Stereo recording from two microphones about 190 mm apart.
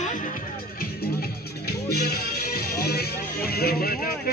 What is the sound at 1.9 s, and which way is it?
Music, 55° left (ahead or behind).